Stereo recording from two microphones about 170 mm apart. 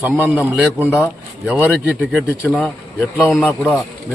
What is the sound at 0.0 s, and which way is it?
A man's voice, 5° right (ahead or behind).